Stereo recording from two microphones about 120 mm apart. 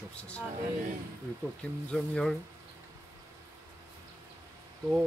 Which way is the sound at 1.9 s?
5° left (ahead or behind).